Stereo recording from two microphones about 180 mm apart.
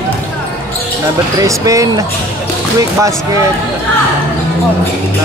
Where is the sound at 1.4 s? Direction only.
20° right (ahead or behind).